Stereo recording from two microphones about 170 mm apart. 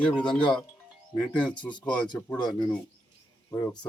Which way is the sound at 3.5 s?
20° left (ahead or behind).